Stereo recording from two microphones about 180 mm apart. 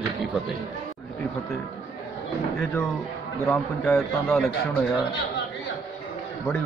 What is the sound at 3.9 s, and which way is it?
Speech, 10° left (ahead or behind).